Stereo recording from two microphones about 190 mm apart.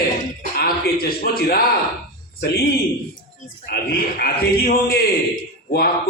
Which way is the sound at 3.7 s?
55° left (ahead or behind).